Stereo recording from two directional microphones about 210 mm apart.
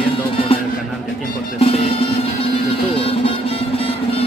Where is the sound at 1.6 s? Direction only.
25° left (ahead or behind).